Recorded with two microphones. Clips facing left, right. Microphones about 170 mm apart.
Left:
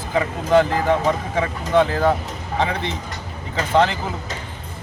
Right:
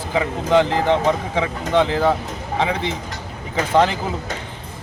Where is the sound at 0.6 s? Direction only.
20° right (ahead or behind).